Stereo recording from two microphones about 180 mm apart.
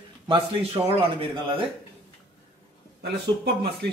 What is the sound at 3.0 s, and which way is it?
Speech, 65° right (ahead or behind).